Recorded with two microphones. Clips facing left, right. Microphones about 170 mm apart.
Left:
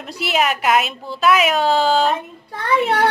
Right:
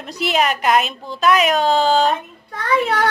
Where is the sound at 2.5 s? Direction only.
30° left (ahead or behind).